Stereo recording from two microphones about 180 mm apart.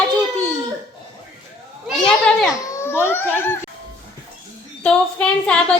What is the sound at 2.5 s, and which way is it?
A woman's voice, 15° left (ahead or behind).